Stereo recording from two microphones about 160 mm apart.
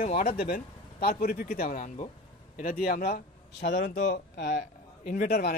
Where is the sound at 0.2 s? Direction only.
65° left (ahead or behind).